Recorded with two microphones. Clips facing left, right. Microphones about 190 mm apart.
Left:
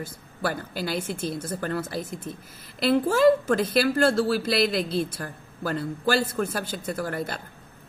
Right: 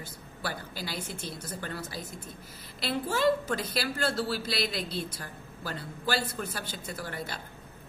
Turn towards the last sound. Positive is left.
turn(degrees=50)  # may be behind; listen again after turning